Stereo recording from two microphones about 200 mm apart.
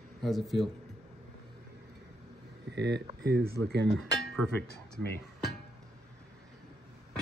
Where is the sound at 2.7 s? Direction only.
60° right (ahead or behind).